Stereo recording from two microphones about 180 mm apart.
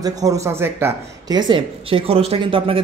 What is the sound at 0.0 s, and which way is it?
Speech, 20° right (ahead or behind).